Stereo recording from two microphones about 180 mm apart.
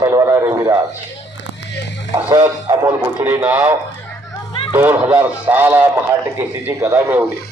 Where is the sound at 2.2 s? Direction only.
25° right (ahead or behind).